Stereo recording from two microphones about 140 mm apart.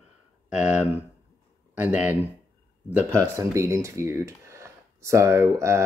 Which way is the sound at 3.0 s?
20° right (ahead or behind).